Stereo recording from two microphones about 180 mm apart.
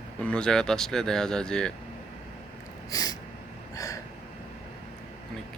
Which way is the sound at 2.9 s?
20° left (ahead or behind).